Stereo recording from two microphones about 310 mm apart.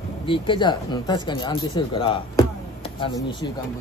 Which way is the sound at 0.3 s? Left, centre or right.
Centre.